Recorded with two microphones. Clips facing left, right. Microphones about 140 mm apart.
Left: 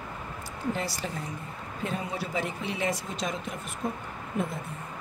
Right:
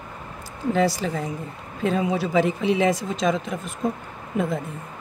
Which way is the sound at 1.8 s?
90° right.